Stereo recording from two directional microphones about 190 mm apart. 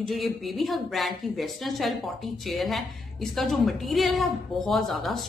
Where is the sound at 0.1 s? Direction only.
Centre (ahead or behind).